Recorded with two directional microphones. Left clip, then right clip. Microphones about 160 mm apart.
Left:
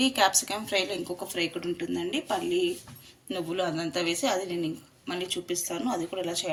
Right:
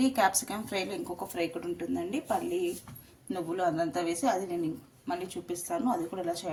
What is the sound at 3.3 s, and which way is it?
A woman's voice, 45° right (ahead or behind).